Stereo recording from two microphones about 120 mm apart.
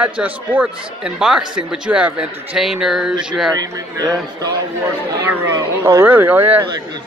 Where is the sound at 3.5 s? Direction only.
30° right (ahead or behind).